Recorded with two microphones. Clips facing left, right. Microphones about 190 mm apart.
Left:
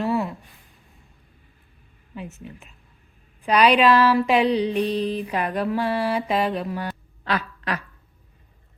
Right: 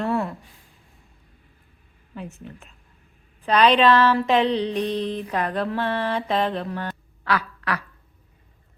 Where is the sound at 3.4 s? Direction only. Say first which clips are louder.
Even; 10° left (ahead or behind).